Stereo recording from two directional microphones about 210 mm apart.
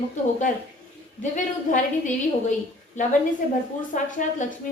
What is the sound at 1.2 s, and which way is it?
Speech, 35° left (ahead or behind).